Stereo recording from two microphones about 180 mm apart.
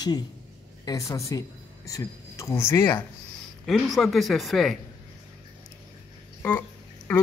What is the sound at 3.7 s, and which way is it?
Speech, centre (ahead or behind).